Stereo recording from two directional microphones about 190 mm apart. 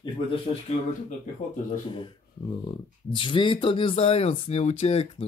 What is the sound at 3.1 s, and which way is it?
Speech, 25° left (ahead or behind).